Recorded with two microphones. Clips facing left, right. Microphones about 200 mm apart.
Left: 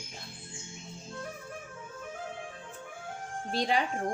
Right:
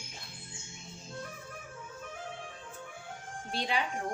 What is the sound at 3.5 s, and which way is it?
Speech, 40° left (ahead or behind).